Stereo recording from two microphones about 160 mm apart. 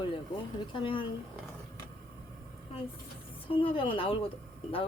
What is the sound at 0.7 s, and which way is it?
Speech, 30° left (ahead or behind).